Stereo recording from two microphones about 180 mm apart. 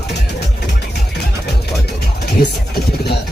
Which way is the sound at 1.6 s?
60° left (ahead or behind).